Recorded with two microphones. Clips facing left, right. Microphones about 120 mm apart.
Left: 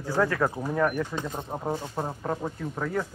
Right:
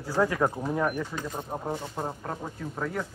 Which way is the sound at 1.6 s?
5° left (ahead or behind).